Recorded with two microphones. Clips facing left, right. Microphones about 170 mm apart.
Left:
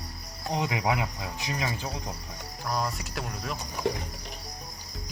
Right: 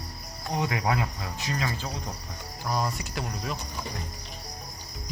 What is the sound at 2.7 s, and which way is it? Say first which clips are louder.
Speech: right 1 dB; centre (ahead or behind).